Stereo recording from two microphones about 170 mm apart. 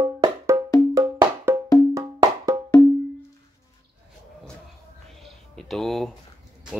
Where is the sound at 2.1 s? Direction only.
20° right (ahead or behind).